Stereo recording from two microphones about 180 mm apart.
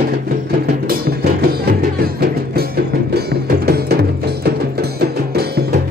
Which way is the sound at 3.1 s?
60° right (ahead or behind).